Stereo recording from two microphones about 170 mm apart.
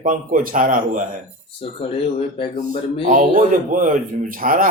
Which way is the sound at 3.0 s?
50° right (ahead or behind).